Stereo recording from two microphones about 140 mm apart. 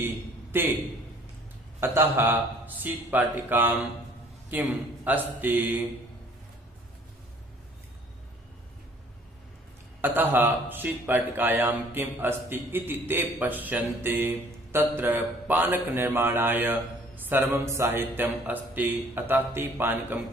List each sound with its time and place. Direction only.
0.0 s a man's voice: 15° right (ahead or behind)
1.8 s a man's voice: 15° right (ahead or behind)
10.0 s a man's voice: 15° right (ahead or behind)